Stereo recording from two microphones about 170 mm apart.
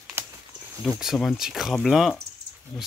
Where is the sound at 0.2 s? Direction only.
15° right (ahead or behind).